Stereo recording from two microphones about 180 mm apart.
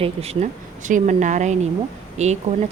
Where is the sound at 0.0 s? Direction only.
35° right (ahead or behind).